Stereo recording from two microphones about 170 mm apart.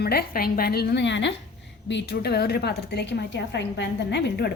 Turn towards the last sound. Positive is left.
turn(degrees=90)